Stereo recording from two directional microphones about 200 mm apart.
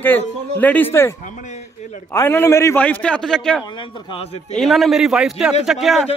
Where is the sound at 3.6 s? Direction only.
25° left (ahead or behind).